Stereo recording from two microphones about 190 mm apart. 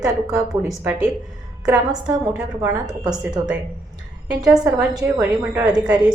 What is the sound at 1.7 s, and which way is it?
Speech, 20° right (ahead or behind).